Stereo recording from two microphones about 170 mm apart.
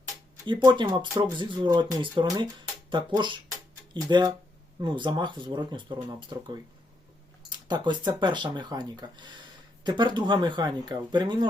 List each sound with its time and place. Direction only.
0.4 s speech: 30° right (ahead or behind)